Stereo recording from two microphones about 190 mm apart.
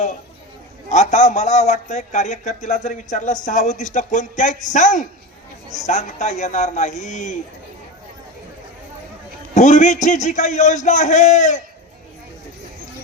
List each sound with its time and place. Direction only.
0.9 s a man's voice: 35° left (ahead or behind)
9.6 s a man's voice: 40° left (ahead or behind)